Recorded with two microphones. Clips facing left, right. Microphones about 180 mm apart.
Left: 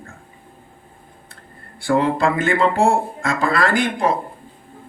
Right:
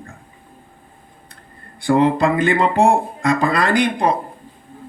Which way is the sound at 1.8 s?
20° right (ahead or behind).